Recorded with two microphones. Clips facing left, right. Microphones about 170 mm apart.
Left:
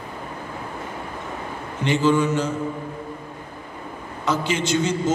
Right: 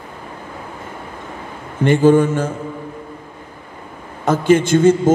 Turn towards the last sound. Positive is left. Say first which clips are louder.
# right 9 dB
turn(degrees=-50)  # may be behind; listen again after turning